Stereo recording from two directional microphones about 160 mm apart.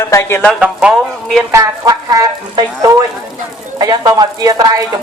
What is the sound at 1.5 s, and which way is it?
Speech, 20° right (ahead or behind).